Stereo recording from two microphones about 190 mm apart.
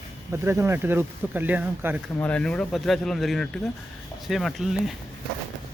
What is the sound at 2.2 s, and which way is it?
Speech, 5° left (ahead or behind).